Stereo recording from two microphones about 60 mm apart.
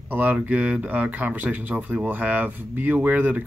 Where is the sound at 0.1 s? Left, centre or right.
Right.